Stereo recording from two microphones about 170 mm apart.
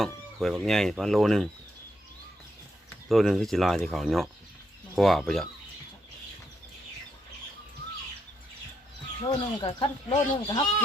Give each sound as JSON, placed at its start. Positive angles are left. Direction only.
{"t": 0.0, "sound": "speech", "side_deg": 0}
{"t": 3.1, "sound": "speech", "side_deg": 0}
{"t": 9.2, "sound": "speech", "side_deg": 25}